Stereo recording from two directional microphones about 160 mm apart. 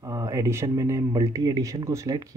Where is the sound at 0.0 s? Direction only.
20° right (ahead or behind).